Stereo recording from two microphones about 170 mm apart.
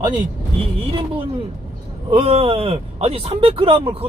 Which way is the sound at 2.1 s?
35° right (ahead or behind).